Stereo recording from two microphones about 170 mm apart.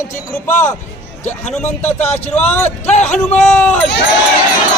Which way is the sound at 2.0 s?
40° left (ahead or behind).